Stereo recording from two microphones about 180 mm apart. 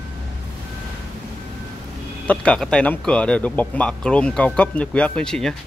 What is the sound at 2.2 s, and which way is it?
Speech, 5° left (ahead or behind).